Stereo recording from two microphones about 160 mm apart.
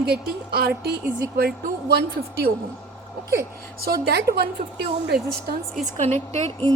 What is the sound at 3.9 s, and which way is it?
A woman's voice, 85° right.